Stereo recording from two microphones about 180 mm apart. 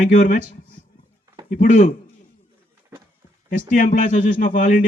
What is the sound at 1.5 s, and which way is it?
Speech, 45° left (ahead or behind).